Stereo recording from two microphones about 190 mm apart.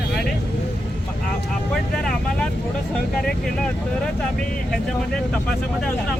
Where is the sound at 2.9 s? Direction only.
Centre (ahead or behind).